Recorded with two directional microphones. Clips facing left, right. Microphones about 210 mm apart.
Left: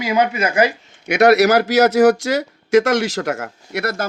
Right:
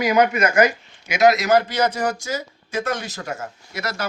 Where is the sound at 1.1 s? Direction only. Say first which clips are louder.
Left 4 dB; 65° left (ahead or behind).